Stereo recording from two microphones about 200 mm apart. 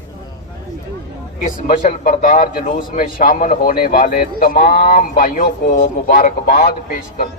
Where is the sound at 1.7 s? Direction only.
40° left (ahead or behind).